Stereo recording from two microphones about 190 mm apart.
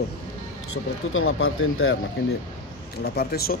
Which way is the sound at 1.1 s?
90° left.